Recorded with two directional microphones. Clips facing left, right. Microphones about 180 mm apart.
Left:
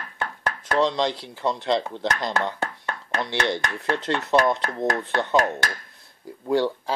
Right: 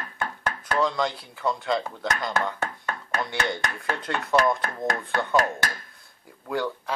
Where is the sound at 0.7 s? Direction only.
25° left (ahead or behind).